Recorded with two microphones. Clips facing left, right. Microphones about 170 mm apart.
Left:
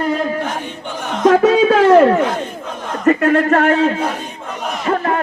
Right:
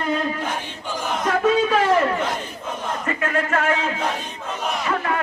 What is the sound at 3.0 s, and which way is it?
Speech, 40° left (ahead or behind).